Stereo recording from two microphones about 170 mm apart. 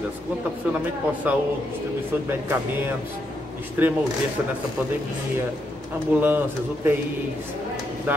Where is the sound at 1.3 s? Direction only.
10° right (ahead or behind).